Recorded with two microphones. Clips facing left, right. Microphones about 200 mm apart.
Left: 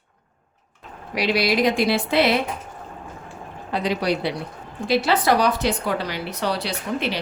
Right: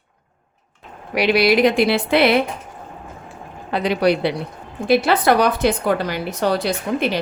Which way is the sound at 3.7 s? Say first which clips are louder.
Right 5 dB; 65° right (ahead or behind).